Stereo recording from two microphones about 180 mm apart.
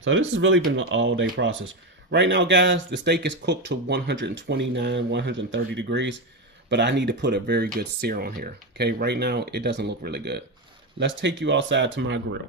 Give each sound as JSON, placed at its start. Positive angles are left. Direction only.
{"t": 0.0, "sound": "speech", "side_deg": -90}
{"t": 11.0, "sound": "speech", "side_deg": -85}